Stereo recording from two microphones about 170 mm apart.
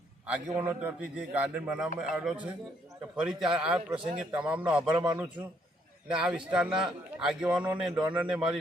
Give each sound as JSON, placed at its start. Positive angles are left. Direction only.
{"t": 0.3, "sound": "a man's voice", "side_deg": -5}
{"t": 3.8, "sound": "speech", "side_deg": -25}
{"t": 4.2, "sound": "a man's voice", "side_deg": -10}
{"t": 6.1, "sound": "a man's voice", "side_deg": -5}